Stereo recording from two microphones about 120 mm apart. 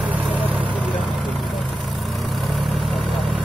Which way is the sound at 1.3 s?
Centre (ahead or behind).